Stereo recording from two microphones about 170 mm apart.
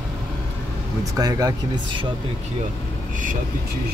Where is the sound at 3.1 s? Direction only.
50° right (ahead or behind).